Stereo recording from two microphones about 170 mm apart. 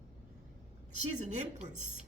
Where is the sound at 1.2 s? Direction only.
45° right (ahead or behind).